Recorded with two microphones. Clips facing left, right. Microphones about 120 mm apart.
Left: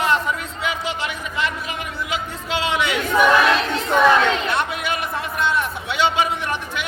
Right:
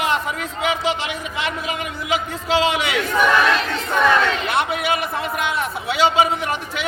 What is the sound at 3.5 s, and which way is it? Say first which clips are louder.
Battle cry: left 2 dB; 10° left (ahead or behind).